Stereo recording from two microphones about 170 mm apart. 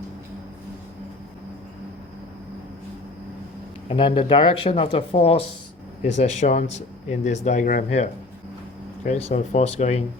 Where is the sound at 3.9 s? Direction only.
30° left (ahead or behind).